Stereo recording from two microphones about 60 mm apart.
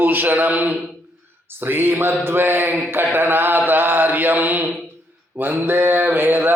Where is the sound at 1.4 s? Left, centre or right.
Right.